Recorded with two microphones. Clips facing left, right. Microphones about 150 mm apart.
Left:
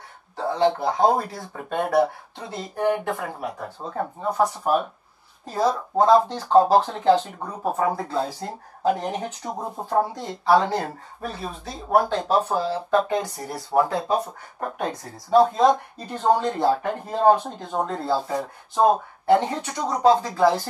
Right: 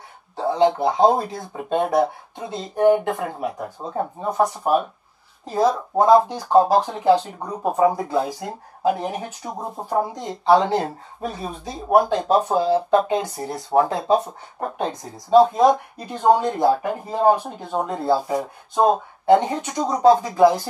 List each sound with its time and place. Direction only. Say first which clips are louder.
0.4 s speech: right 3 dB; 20° right (ahead or behind)
5.6 s speech: right 2 dB; 15° right (ahead or behind)